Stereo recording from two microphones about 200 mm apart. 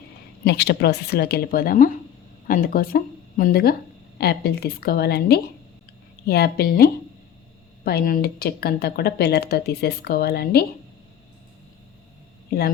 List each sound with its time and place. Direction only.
0.4 s speech: 55° left (ahead or behind)